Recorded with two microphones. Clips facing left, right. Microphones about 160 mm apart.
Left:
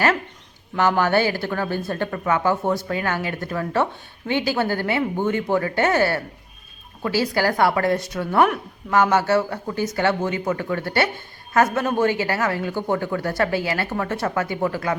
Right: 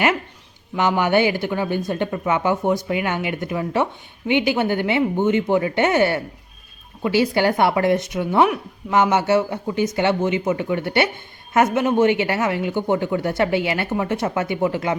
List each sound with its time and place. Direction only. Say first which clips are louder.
0.8 s speech: right 1 dB; 20° right (ahead or behind)